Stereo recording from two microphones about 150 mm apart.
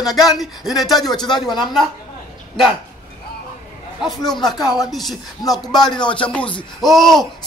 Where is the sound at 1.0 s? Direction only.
30° left (ahead or behind).